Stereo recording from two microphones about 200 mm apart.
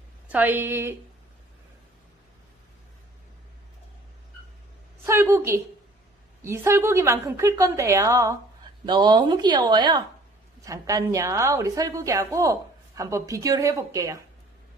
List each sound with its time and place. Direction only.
0.3 s a woman's voice: 10° right (ahead or behind)
5.0 s a woman's voice: 15° right (ahead or behind)